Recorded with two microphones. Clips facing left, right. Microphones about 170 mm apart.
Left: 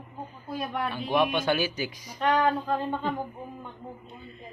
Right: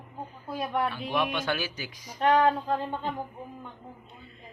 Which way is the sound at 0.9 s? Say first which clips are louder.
Left 4 dB; 20° left (ahead or behind).